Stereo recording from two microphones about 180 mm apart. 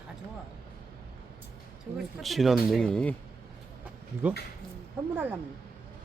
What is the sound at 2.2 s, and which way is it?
Speech, centre (ahead or behind).